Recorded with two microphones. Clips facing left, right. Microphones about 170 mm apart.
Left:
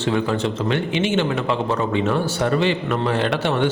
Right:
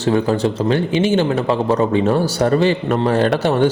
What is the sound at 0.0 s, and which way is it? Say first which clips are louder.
A man's voice: right 5 dB; 40° right (ahead or behind).